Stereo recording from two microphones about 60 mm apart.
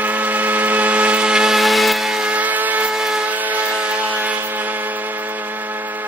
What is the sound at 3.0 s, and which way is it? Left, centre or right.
Steam whistle, centre.